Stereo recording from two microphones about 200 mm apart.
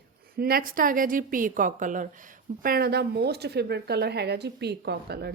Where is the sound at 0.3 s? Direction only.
50° right (ahead or behind).